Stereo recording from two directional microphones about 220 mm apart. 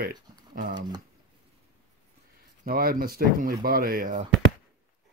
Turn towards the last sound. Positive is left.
turn(degrees=-40)  # may be behind; listen again after turning